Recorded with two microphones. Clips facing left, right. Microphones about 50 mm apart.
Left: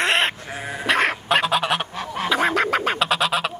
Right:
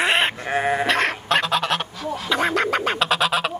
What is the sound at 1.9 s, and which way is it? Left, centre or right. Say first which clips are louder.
Goose: left 2 dB; left.